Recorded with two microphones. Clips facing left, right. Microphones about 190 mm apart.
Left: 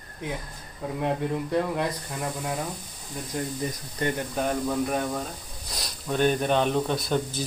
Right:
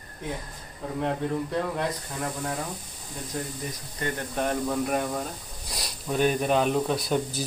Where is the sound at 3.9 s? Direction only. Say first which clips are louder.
Left 4 dB; 20° left (ahead or behind).